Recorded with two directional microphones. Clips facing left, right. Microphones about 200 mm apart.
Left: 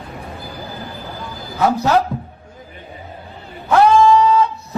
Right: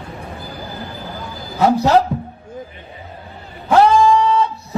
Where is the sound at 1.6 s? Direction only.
25° right (ahead or behind).